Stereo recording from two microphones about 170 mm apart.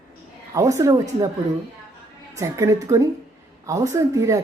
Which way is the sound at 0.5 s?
20° right (ahead or behind).